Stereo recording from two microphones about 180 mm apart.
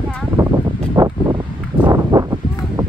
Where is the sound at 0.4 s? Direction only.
20° right (ahead or behind).